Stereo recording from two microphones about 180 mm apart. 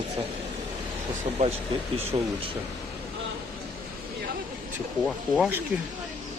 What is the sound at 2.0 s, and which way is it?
Speech, 35° right (ahead or behind).